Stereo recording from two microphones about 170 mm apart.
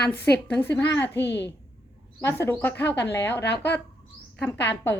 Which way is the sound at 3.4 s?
80° left.